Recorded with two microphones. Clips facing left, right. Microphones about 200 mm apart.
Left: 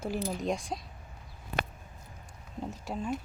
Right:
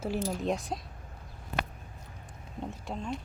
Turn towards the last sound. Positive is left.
turn(degrees=5)  # may be behind; listen again after turning